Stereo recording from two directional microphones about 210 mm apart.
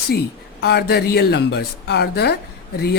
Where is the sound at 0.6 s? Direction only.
50° left (ahead or behind).